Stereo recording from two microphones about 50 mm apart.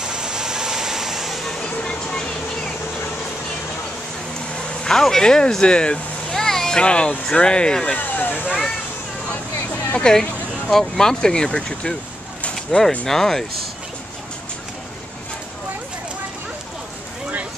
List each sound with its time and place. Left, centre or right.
0.0 s vehicle: centre
1.5 s a sound: centre
4.6 s speech: centre
6.3 s speech: centre
7.9 s vehicle: left
9.9 s speech: centre
13.0 s speech: centre